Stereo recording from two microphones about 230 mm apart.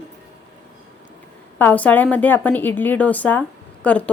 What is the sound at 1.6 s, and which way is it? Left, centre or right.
A woman's voice, centre.